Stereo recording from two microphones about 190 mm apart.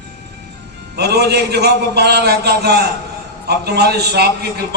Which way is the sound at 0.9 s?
60° right (ahead or behind).